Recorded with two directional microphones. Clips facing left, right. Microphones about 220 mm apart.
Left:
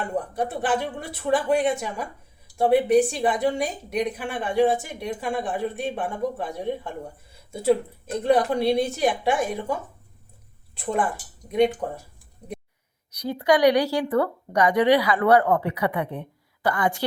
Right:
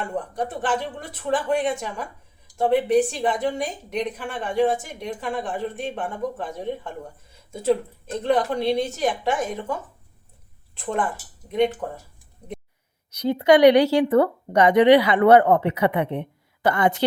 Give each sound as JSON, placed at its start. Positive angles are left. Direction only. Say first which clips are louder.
{"t": 0.1, "sound": "a woman's voice", "louder": "left 1 dB", "side_deg": 10}
{"t": 10.8, "sound": "a woman's voice", "louder": "left 1 dB", "side_deg": 5}
{"t": 13.1, "sound": "speech", "louder": "right 4 dB", "side_deg": -25}